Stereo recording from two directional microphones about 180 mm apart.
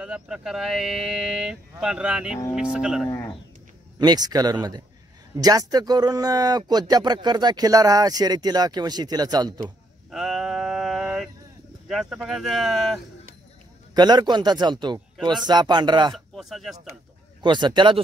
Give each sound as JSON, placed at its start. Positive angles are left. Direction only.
{"t": 0.0, "sound": "speech", "side_deg": -5}
{"t": 4.0, "sound": "speech", "side_deg": -20}
{"t": 10.1, "sound": "a sound", "side_deg": 0}
{"t": 11.9, "sound": "speech", "side_deg": -5}
{"t": 13.9, "sound": "speech", "side_deg": -25}
{"t": 16.3, "sound": "speech", "side_deg": 0}
{"t": 17.4, "sound": "speech", "side_deg": -25}